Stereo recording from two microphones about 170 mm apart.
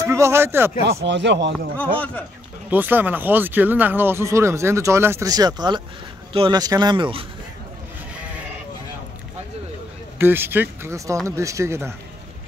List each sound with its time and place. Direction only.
0.0 s speech: 15° right (ahead or behind)
0.8 s speech: 90° right
1.8 s a man's voice: 10° left (ahead or behind)
2.7 s speech: 10° right (ahead or behind); by 7.2 s 30° right (ahead or behind)
10.1 s speech: 15° right (ahead or behind)